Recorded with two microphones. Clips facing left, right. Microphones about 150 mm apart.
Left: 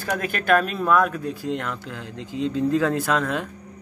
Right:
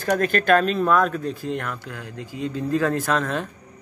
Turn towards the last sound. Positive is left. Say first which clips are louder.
# even
turn(degrees=15)  # may be behind; listen again after turning